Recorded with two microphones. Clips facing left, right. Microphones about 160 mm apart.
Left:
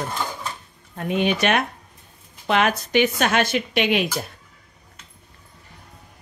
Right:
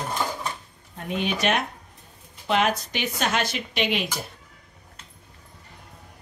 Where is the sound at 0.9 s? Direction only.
65° left (ahead or behind).